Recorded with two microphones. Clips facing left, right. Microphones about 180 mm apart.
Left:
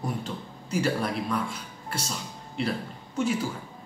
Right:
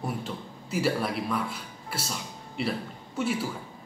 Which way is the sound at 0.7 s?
5° right (ahead or behind).